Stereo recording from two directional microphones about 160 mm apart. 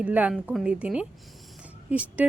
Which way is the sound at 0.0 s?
10° right (ahead or behind).